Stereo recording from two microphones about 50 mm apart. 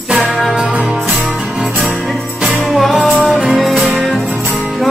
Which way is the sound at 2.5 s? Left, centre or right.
Centre.